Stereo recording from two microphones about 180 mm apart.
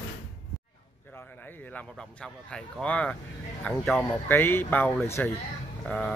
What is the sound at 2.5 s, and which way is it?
A man's voice, 5° left (ahead or behind).